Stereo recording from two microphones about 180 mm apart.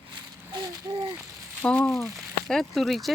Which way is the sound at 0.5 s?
20° right (ahead or behind).